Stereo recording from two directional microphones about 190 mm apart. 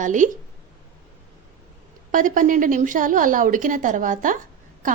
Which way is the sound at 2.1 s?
45° right (ahead or behind).